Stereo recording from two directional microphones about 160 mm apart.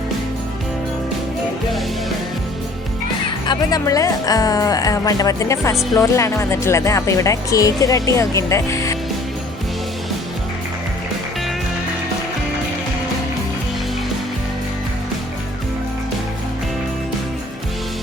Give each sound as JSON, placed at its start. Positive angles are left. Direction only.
{"t": 3.4, "sound": "speech", "side_deg": 25}